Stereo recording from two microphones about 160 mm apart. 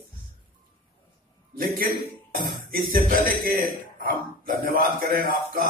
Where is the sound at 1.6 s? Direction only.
65° right (ahead or behind).